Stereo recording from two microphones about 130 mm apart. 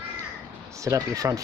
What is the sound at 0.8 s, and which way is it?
Speech, 25° right (ahead or behind).